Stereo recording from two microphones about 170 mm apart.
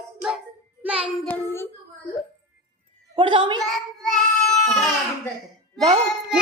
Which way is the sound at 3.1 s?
30° right (ahead or behind).